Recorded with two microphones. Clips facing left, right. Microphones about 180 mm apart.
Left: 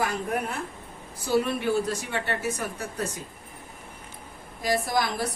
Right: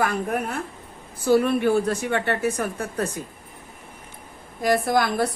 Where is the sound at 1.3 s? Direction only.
60° right (ahead or behind).